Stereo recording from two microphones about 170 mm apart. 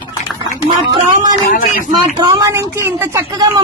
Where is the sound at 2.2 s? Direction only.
20° right (ahead or behind).